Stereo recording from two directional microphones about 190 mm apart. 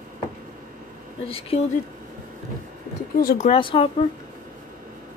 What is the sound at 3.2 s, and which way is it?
Speech, 50° left (ahead or behind).